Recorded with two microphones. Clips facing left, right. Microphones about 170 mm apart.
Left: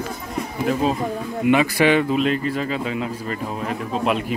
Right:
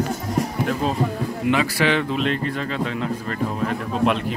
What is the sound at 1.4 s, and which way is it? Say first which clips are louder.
Speech: left 4 dB; 15° left (ahead or behind).